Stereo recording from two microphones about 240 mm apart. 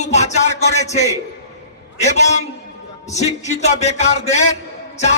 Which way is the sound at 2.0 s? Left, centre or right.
Left.